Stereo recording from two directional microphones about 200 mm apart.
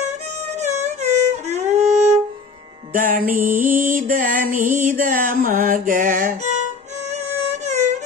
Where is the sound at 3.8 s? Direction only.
45° right (ahead or behind).